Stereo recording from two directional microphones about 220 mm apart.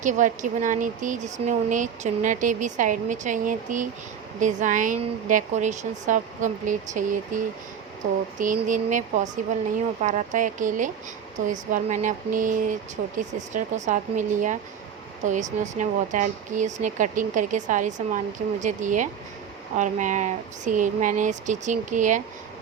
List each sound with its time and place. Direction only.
0.0 s speech: 35° right (ahead or behind)